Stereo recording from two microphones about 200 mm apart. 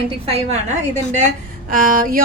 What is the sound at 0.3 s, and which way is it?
Speech, 30° right (ahead or behind).